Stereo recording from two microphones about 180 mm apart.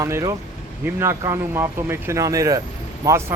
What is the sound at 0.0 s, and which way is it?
Speech, 20° right (ahead or behind).